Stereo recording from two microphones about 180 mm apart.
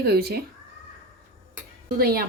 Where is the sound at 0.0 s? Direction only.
60° right (ahead or behind).